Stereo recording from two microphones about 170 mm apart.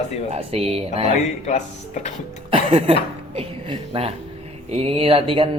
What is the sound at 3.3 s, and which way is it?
A woman's voice, 35° right (ahead or behind).